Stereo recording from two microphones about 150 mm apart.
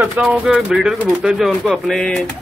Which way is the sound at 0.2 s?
5° right (ahead or behind).